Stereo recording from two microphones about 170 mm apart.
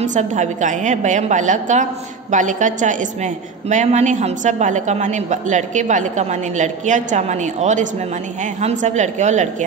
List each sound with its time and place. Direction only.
0.0 s a woman's voice: 45° right (ahead or behind)